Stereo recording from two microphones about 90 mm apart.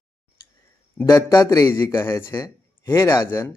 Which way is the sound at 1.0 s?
45° left (ahead or behind).